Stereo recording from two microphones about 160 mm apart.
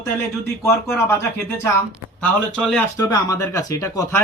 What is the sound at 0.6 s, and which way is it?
Speech, 15° left (ahead or behind).